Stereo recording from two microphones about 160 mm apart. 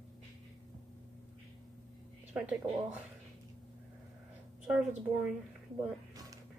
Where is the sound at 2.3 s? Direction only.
5° right (ahead or behind).